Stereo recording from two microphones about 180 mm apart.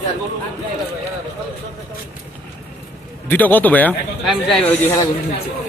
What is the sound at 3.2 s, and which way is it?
A man's voice, 10° left (ahead or behind).